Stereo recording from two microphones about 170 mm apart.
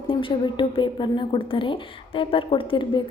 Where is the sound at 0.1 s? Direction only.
30° left (ahead or behind).